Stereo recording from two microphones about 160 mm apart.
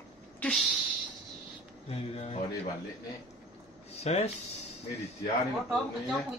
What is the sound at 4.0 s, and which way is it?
Speech, 45° left (ahead or behind).